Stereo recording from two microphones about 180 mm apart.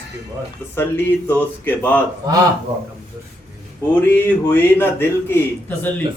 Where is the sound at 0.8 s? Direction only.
10° left (ahead or behind).